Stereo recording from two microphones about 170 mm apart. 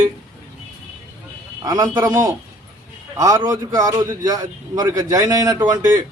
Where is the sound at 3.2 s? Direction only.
20° right (ahead or behind).